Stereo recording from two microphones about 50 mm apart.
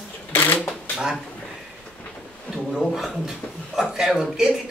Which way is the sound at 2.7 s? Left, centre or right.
Centre.